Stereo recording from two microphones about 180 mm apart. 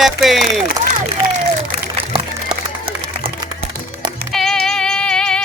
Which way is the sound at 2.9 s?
30° right (ahead or behind).